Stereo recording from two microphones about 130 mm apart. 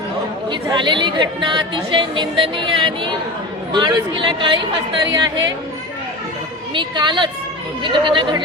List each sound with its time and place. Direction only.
0.5 s a woman's voice: 35° right (ahead or behind)
6.7 s a woman's voice: 35° right (ahead or behind)